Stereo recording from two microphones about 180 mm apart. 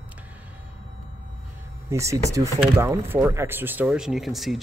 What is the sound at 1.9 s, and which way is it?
Speech, 15° right (ahead or behind).